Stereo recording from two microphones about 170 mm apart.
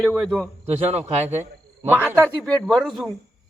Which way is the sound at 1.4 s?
15° right (ahead or behind).